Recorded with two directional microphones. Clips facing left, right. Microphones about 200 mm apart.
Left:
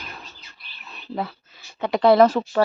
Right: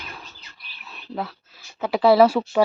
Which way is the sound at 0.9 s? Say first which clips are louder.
Left 1 dB; centre (ahead or behind).